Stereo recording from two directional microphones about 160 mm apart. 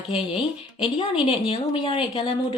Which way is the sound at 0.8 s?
30° left (ahead or behind).